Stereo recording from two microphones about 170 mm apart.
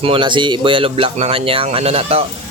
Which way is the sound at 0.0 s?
30° right (ahead or behind).